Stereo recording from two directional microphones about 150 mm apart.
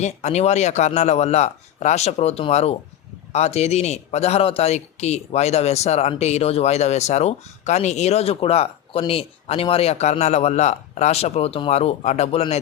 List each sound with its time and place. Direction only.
0.0 s a man's voice: 50° left (ahead or behind)